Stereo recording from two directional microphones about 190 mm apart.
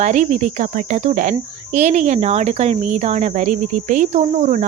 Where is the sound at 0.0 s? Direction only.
40° right (ahead or behind).